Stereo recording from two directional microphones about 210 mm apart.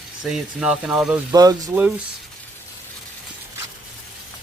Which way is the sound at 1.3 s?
15° right (ahead or behind).